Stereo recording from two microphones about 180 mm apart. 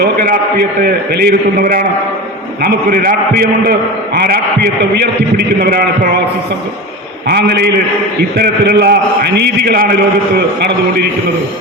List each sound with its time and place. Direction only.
0.0 s a sound: 60° right (ahead or behind)
0.8 s a man's voice: 60° right (ahead or behind)
7.3 s a man's voice: 60° right (ahead or behind)